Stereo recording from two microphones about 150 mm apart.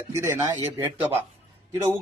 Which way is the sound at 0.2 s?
15° right (ahead or behind).